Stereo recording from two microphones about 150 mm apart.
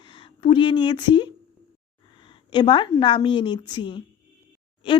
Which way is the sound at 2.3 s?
35° left (ahead or behind).